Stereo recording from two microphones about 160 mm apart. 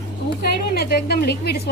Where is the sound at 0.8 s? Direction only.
80° left.